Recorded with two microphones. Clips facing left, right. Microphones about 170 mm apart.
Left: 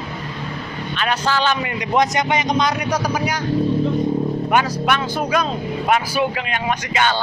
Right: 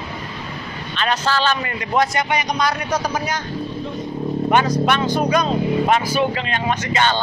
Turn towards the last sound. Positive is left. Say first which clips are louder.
# right 1 dB
turn(degrees=10)  # may be behind; listen again after turning